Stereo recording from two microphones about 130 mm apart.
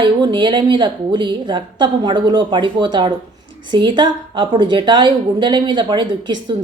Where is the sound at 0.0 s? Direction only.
35° right (ahead or behind).